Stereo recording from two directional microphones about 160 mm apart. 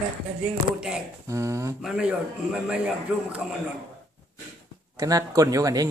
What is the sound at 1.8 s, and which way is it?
A man's voice, 5° right (ahead or behind).